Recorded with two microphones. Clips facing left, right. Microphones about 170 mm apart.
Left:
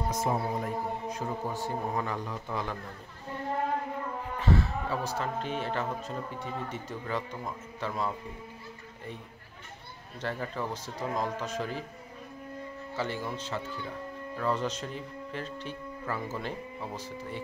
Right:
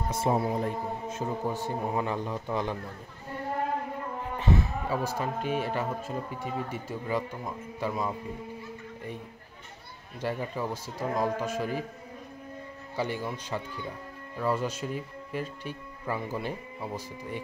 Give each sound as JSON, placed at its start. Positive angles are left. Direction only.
{"t": 0.2, "sound": "speech", "side_deg": -30}
{"t": 1.1, "sound": "speech", "side_deg": -20}
{"t": 4.4, "sound": "a man's voice", "side_deg": -15}
{"t": 10.2, "sound": "a man's voice", "side_deg": -10}
{"t": 12.9, "sound": "a man's voice", "side_deg": -15}